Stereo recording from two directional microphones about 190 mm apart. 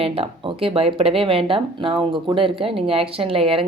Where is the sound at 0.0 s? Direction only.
30° right (ahead or behind).